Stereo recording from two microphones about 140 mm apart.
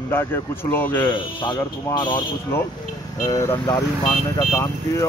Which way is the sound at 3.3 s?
25° left (ahead or behind).